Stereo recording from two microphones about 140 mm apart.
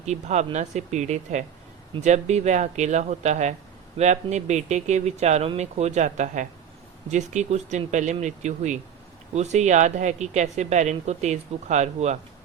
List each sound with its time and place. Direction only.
0.0 s speech: 55° right (ahead or behind)